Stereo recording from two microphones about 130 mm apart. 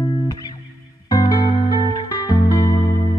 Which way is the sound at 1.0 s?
30° left (ahead or behind).